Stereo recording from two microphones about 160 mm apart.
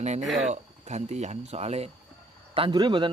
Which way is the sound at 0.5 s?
45° right (ahead or behind).